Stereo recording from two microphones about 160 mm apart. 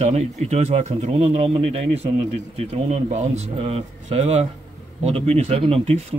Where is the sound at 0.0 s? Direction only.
45° right (ahead or behind).